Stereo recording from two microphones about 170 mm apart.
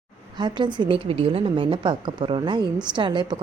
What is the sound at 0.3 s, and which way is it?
Speech, 25° right (ahead or behind).